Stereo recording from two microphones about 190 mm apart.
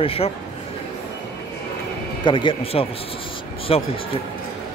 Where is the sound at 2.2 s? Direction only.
25° left (ahead or behind).